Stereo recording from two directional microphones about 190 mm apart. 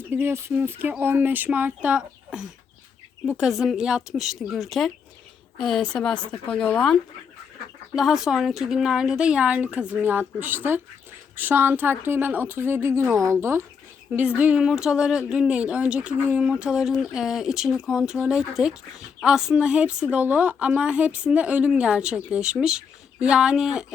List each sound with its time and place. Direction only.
0.1 s speech: 10° right (ahead or behind)